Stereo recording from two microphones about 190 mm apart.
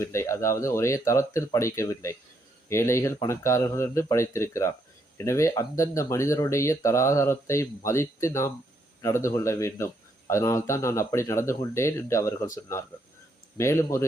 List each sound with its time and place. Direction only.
0.0 s a man's voice: 15° left (ahead or behind)
13.6 s a man's voice: 15° left (ahead or behind)